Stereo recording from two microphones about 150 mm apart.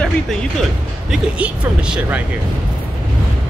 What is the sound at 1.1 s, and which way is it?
Speech, 5° right (ahead or behind).